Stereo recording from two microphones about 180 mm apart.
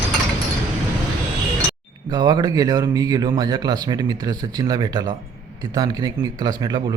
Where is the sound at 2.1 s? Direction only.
25° right (ahead or behind).